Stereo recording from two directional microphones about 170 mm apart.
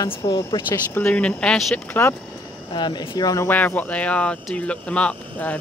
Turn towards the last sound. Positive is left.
turn(degrees=10)  # may be behind; listen again after turning